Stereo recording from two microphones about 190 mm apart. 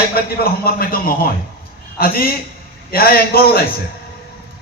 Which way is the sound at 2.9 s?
50° left (ahead or behind).